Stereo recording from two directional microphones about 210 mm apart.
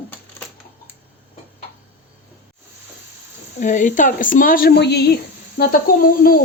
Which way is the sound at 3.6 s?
35° left (ahead or behind).